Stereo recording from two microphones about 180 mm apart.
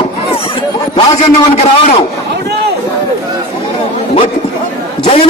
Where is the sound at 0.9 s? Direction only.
35° left (ahead or behind).